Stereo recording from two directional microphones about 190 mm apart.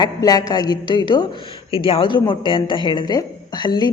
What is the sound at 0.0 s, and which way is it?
Speech, 20° left (ahead or behind).